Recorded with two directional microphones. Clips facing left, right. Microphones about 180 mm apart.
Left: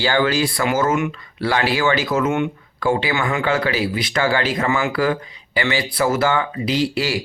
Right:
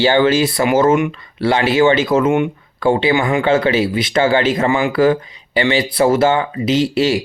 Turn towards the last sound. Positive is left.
turn(degrees=-25)  # may be behind; listen again after turning